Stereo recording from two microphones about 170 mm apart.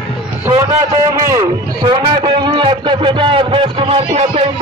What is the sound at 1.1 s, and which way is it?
A man's voice, 20° right (ahead or behind).